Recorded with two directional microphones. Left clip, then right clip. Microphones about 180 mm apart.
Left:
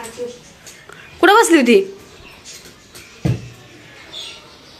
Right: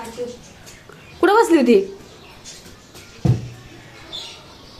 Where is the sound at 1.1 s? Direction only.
5° left (ahead or behind).